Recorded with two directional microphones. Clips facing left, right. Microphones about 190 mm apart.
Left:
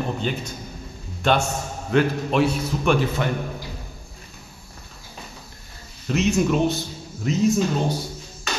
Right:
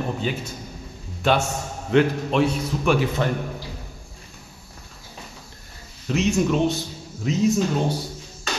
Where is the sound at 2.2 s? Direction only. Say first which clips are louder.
Even; 5° left (ahead or behind).